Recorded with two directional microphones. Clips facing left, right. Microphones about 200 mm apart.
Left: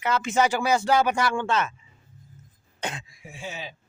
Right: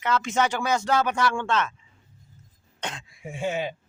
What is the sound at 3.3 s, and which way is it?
Speech, 55° right (ahead or behind).